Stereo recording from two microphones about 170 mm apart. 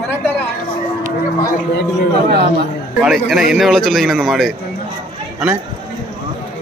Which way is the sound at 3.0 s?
Centre (ahead or behind).